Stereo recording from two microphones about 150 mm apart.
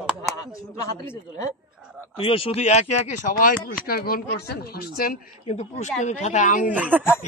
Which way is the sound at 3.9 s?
90° left.